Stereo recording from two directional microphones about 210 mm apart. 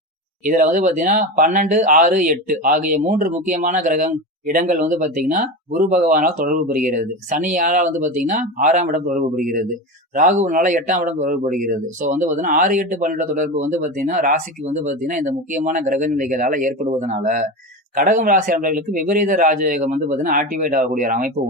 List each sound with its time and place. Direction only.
0.4 s speech: 40° right (ahead or behind)